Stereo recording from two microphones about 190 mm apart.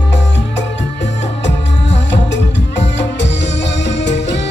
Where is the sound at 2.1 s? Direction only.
70° left (ahead or behind).